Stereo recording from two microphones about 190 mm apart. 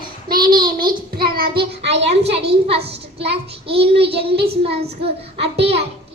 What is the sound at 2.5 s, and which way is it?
Speech, 30° right (ahead or behind).